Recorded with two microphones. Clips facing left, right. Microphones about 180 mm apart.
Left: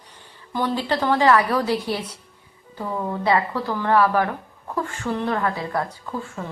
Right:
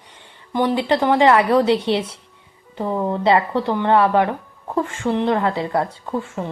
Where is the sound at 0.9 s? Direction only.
20° right (ahead or behind).